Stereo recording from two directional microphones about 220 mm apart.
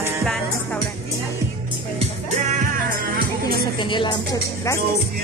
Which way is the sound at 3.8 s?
20° left (ahead or behind).